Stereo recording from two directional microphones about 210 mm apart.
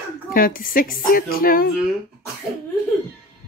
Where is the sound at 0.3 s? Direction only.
45° left (ahead or behind).